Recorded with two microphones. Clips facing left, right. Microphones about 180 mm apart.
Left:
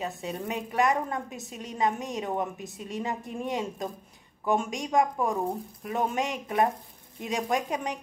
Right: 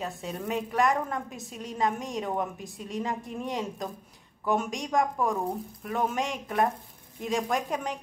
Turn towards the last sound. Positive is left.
turn(degrees=0)  # may be behind; listen again after turning